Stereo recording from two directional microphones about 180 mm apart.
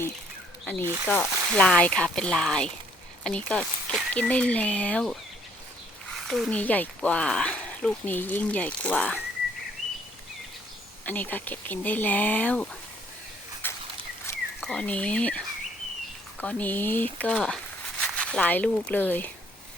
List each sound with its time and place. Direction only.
0.6 s speech: 10° left (ahead or behind)
6.1 s speech: centre (ahead or behind)
11.0 s speech: 10° left (ahead or behind)
13.6 s a sound: 10° left (ahead or behind)
14.6 s speech: 5° left (ahead or behind)